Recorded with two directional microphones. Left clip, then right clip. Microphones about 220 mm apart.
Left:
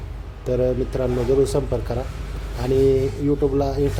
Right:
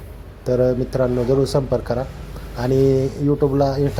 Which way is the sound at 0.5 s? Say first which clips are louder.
Right 3 dB; 15° right (ahead or behind).